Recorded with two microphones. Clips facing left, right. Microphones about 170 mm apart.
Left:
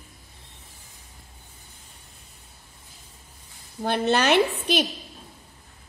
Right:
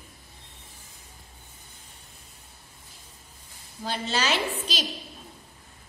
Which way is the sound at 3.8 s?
60° left (ahead or behind).